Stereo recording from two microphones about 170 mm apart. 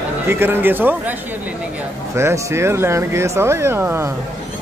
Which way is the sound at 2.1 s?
15° right (ahead or behind).